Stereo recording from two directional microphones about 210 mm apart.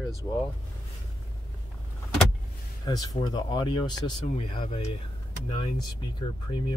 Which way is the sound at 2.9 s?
20° left (ahead or behind).